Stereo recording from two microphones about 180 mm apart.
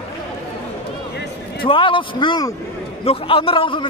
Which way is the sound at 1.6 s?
30° left (ahead or behind).